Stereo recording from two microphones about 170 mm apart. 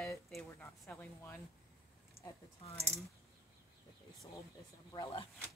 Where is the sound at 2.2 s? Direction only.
40° right (ahead or behind).